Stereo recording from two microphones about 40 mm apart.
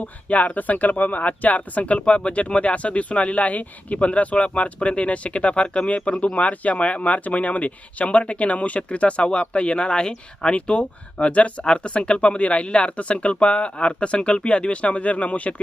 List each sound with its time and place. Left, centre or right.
0.3 s speech: left